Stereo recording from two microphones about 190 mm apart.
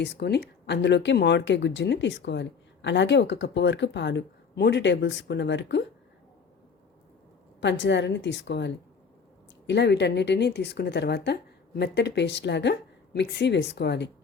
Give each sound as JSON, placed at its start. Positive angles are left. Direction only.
{"t": 0.0, "sound": "speech", "side_deg": 60}
{"t": 7.6, "sound": "a woman's voice", "side_deg": 70}